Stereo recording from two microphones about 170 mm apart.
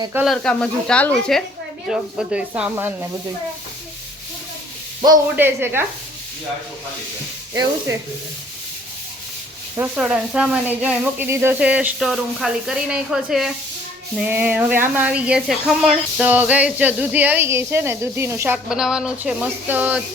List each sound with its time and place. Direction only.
0.3 s speech: 5° left (ahead or behind)
1.9 s speech: 5° right (ahead or behind)
5.0 s speech: 25° right (ahead or behind)
5.4 s speech: 15° right (ahead or behind)
7.5 s speech: 20° right (ahead or behind)
9.7 s speech: 10° right (ahead or behind)